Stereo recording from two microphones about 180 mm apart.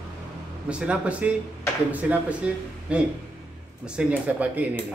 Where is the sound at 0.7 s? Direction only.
5° right (ahead or behind).